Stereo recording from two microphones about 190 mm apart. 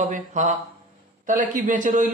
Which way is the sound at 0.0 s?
40° right (ahead or behind).